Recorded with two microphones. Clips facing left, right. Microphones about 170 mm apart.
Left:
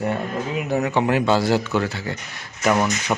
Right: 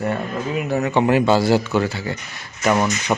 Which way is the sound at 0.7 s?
10° left (ahead or behind).